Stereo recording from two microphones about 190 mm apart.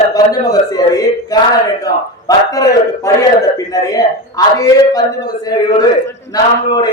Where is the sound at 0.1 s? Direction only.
20° left (ahead or behind).